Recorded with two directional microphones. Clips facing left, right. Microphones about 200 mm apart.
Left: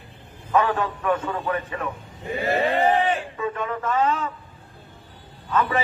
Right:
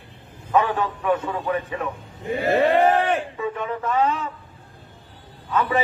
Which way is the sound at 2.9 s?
65° right (ahead or behind).